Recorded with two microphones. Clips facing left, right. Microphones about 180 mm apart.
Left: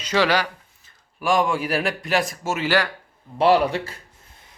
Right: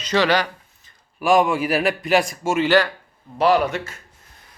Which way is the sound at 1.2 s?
Centre (ahead or behind).